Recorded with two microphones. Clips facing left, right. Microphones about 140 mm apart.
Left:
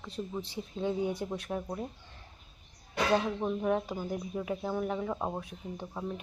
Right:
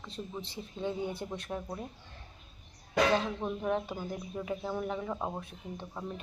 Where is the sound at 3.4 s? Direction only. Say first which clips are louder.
Left 2 dB; 5° left (ahead or behind).